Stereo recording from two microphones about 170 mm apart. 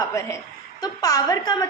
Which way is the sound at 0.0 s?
20° left (ahead or behind).